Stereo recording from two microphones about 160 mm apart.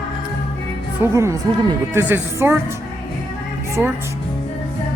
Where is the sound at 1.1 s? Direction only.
15° right (ahead or behind).